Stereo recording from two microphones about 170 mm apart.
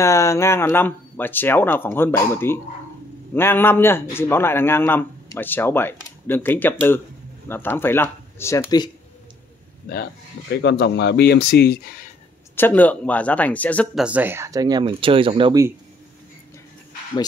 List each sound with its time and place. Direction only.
0.0 s a man's voice: 15° left (ahead or behind)
9.9 s speech: 60° left (ahead or behind)
10.6 s speech: 85° left; by 12.1 s 65° left (ahead or behind)
12.5 s a man's voice: 10° left (ahead or behind)
13.9 s speech: 5° right (ahead or behind); by 15.5 s 30° right (ahead or behind)